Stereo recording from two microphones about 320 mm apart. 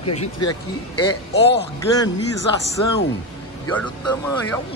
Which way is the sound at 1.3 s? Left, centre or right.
Left.